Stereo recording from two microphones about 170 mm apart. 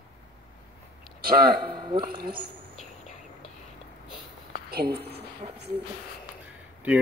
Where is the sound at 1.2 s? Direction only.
65° right (ahead or behind).